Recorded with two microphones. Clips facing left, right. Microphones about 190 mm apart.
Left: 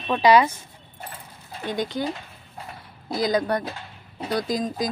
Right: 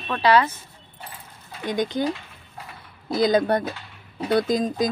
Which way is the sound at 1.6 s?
20° right (ahead or behind).